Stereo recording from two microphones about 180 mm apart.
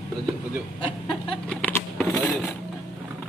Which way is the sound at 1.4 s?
5° left (ahead or behind).